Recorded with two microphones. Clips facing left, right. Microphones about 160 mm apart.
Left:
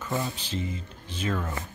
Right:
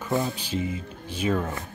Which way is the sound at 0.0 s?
15° right (ahead or behind).